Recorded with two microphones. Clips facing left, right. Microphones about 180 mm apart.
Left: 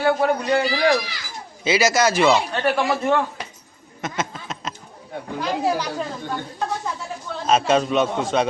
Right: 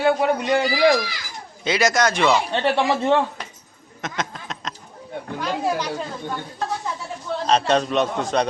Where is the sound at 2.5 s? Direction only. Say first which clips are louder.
Right 1 dB; 25° right (ahead or behind).